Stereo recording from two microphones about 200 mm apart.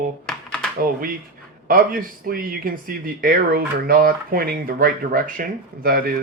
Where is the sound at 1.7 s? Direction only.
45° right (ahead or behind).